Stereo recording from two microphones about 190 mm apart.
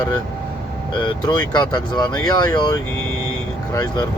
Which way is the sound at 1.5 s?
20° left (ahead or behind).